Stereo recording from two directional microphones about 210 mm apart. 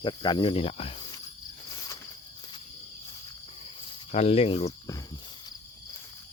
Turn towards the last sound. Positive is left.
turn(degrees=15)  # may be behind; listen again after turning